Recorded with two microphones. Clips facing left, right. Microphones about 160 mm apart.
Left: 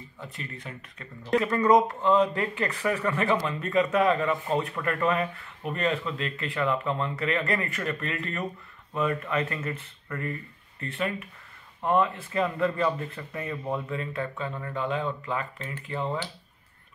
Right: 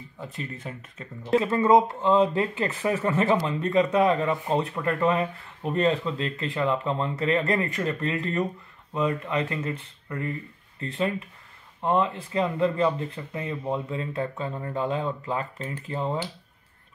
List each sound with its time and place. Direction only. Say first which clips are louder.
0.4 s speech: right 5 dB; 25° right (ahead or behind)